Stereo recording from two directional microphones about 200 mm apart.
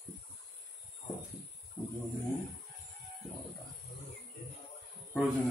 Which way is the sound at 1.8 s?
20° left (ahead or behind).